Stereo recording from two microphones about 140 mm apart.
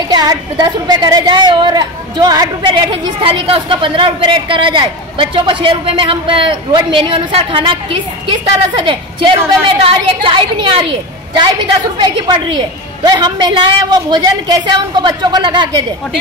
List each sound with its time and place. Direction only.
0.1 s a woman's voice: 30° right (ahead or behind)